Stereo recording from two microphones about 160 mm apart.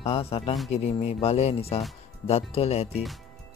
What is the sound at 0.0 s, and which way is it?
Speech, 40° left (ahead or behind).